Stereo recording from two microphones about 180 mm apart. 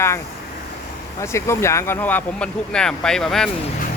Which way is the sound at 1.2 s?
15° left (ahead or behind).